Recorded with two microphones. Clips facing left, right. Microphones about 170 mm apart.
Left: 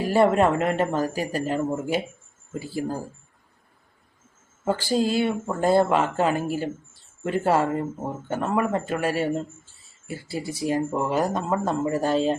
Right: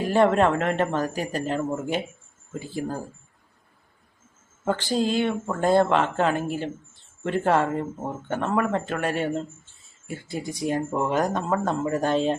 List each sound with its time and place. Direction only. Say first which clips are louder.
0.1 s speech: even; 10° left (ahead or behind)
4.6 s speech: left 1 dB; 10° left (ahead or behind)